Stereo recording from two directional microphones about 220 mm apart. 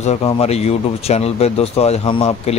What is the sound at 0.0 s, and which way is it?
Speech, 30° left (ahead or behind).